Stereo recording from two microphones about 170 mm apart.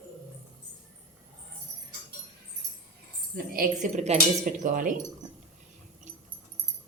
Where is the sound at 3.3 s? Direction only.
60° right (ahead or behind).